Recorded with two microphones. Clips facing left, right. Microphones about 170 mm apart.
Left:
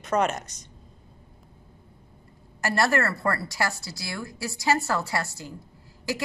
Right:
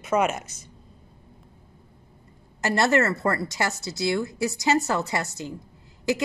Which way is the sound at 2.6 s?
20° right (ahead or behind).